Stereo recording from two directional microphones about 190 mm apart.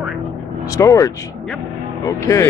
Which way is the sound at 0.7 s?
15° left (ahead or behind).